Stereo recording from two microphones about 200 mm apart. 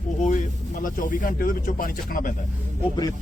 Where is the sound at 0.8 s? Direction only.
45° left (ahead or behind).